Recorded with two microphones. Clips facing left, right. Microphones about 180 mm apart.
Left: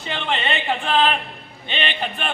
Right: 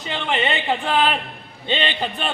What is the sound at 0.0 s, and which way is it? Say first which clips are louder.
Speech: right 2 dB; 20° right (ahead or behind).